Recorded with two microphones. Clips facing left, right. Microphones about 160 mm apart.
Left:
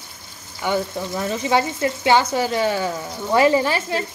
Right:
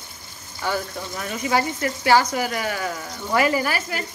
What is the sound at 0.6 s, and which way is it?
Speech, 25° left (ahead or behind).